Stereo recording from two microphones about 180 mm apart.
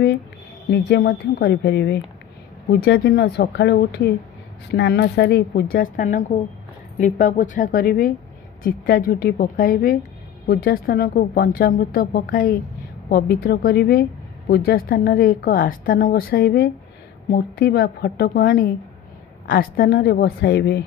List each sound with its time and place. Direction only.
0.7 s a woman's voice: 65° left (ahead or behind)